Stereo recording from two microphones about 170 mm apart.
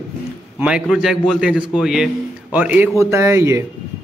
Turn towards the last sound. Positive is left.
turn(degrees=-15)  # may be behind; listen again after turning